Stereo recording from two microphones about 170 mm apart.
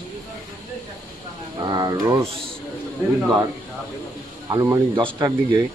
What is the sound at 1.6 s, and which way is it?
Speech, 25° right (ahead or behind).